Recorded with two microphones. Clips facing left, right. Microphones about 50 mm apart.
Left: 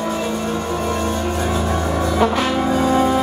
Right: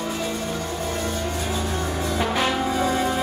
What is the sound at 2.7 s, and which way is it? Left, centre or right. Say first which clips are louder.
Music: left 6 dB; centre.